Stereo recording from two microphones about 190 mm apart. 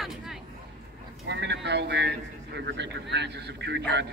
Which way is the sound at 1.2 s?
65° right (ahead or behind).